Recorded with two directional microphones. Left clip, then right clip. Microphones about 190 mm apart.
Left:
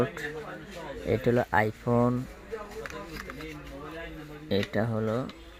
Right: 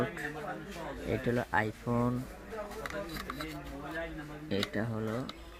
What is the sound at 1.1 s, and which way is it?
Speech, 60° left (ahead or behind).